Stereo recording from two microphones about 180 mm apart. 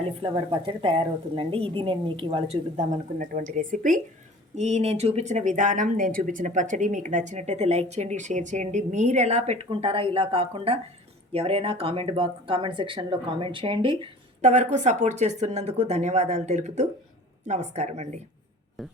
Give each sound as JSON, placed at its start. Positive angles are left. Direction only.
{"t": 0.2, "sound": "speech", "side_deg": -30}
{"t": 2.7, "sound": "speech", "side_deg": -45}
{"t": 14.4, "sound": "speech", "side_deg": -40}
{"t": 18.8, "sound": "speech", "side_deg": 0}